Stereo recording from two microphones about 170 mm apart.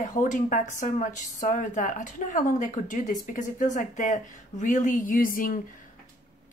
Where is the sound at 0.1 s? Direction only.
45° left (ahead or behind).